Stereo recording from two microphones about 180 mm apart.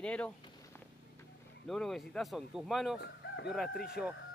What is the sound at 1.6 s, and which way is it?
Speech, centre (ahead or behind).